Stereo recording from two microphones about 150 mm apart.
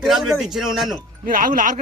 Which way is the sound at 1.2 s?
65° right (ahead or behind).